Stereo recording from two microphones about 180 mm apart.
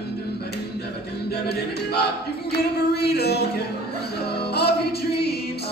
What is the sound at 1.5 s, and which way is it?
Speech, 65° left (ahead or behind).